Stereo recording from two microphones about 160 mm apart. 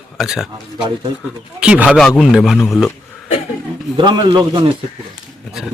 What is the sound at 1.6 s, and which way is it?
A man's voice, 5° right (ahead or behind).